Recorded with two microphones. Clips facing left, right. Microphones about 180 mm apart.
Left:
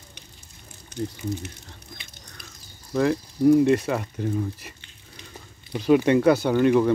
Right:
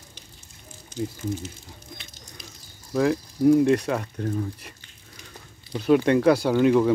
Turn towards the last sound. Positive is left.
turn(degrees=0)  # may be behind; listen again after turning